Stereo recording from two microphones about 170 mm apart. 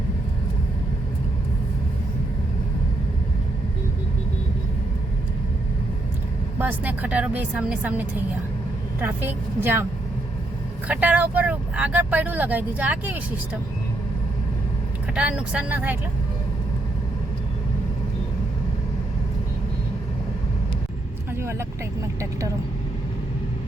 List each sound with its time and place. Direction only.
6.6 s speech: 10° right (ahead or behind)
10.8 s speech: 10° right (ahead or behind)
15.1 s speech: 5° right (ahead or behind)
22.0 s speech: 20° right (ahead or behind)